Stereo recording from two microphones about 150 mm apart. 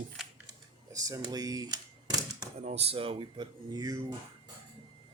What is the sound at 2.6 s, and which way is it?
Speech, 50° right (ahead or behind).